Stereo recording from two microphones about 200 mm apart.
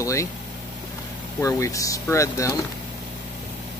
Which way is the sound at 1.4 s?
15° left (ahead or behind).